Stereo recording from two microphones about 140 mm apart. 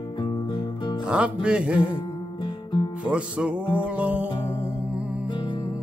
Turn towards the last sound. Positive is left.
turn(degrees=35)  # may be behind; listen again after turning